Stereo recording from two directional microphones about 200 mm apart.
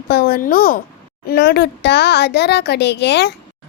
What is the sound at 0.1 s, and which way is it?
A child's voice, 50° left (ahead or behind).